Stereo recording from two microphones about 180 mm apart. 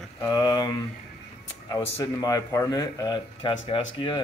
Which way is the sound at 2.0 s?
20° left (ahead or behind).